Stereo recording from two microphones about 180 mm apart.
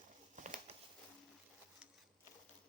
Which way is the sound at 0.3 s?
45° right (ahead or behind).